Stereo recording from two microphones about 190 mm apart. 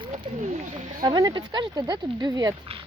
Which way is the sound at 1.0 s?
20° right (ahead or behind).